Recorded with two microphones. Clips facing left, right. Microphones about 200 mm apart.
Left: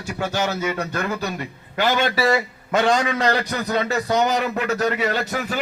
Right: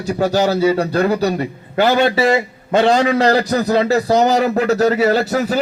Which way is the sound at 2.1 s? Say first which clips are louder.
Right 5 dB; 25° right (ahead or behind).